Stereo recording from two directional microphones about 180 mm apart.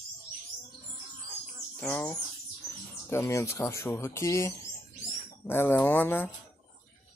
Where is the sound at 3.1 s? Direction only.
15° left (ahead or behind).